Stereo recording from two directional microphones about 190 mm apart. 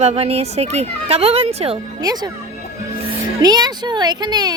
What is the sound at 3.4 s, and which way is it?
Speech, 20° right (ahead or behind).